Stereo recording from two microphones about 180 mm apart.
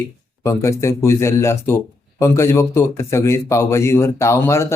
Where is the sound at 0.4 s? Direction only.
15° left (ahead or behind).